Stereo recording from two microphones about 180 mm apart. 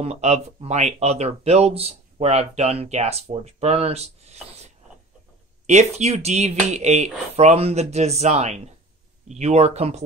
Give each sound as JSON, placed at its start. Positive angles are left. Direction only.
{"t": 0.0, "sound": "speech", "side_deg": -40}